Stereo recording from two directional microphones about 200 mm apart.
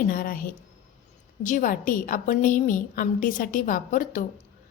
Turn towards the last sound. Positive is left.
turn(degrees=40)  # may be behind; listen again after turning